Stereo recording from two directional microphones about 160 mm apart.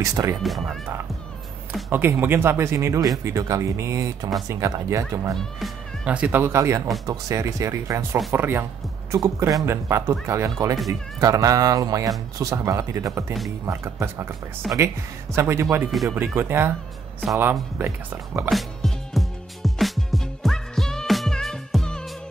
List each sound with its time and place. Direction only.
0.0 s speech: 20° right (ahead or behind)
0.4 s speech: centre (ahead or behind)
1.9 s speech: 15° right (ahead or behind)
5.6 s speech: 10° right (ahead or behind)
14.7 s speech: centre (ahead or behind)
15.3 s speech: 15° right (ahead or behind)
15.9 s speech: centre (ahead or behind)
16.3 s speech: 15° right (ahead or behind)
17.7 s speech: 15° right (ahead or behind)
18.5 s music: centre (ahead or behind)